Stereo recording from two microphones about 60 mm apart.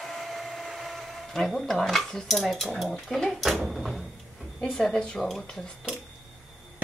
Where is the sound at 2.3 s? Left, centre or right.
Centre.